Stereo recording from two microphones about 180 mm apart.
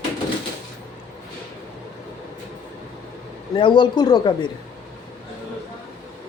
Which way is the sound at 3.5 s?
25° left (ahead or behind).